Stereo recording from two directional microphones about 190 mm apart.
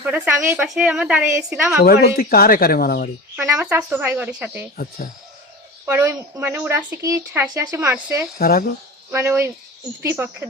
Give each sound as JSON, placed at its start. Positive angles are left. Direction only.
{"t": 0.0, "sound": "speech", "side_deg": -10}
{"t": 1.8, "sound": "speech", "side_deg": 55}
{"t": 3.4, "sound": "speech", "side_deg": -10}
{"t": 5.8, "sound": "speech", "side_deg": -15}
{"t": 8.4, "sound": "speech", "side_deg": 50}
{"t": 9.1, "sound": "speech", "side_deg": -15}